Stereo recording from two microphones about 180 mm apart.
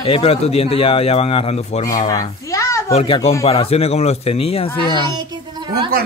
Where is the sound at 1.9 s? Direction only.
20° left (ahead or behind).